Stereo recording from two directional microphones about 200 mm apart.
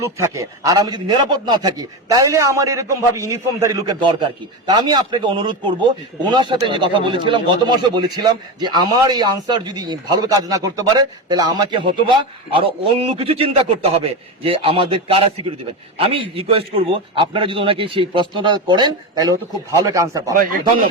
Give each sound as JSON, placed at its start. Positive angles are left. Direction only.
{"t": 0.0, "sound": "speech", "side_deg": -15}
{"t": 20.3, "sound": "speech", "side_deg": -45}